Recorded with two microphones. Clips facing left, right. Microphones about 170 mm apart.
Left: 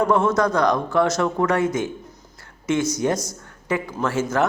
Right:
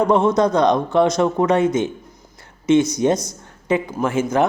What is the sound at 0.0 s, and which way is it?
Speech, 20° right (ahead or behind).